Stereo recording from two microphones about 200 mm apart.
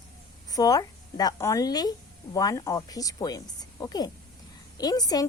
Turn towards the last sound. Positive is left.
turn(degrees=20)  # may be behind; listen again after turning